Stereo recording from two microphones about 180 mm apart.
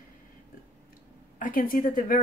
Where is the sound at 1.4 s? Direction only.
50° left (ahead or behind).